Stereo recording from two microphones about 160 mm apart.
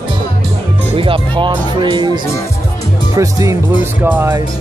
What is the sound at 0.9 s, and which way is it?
Speech, 35° right (ahead or behind).